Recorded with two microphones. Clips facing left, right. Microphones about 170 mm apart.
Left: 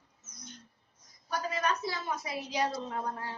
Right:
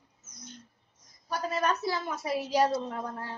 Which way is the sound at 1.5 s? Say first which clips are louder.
Right 5 dB; 45° right (ahead or behind).